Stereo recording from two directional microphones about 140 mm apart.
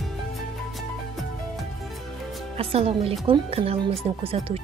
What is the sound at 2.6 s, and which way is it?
A woman's voice, 45° right (ahead or behind).